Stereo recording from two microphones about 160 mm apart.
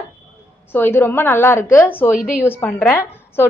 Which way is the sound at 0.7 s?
15° left (ahead or behind).